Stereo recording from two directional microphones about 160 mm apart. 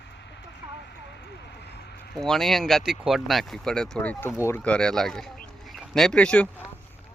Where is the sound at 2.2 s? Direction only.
Centre (ahead or behind).